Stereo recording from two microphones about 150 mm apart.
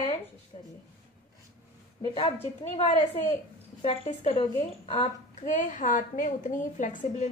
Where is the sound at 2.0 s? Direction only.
35° left (ahead or behind).